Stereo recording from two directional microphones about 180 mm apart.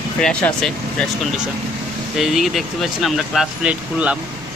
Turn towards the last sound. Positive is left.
turn(degrees=-5)  # may be behind; listen again after turning